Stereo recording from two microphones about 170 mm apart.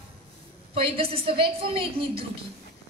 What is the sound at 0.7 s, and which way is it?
Speech, 35° right (ahead or behind).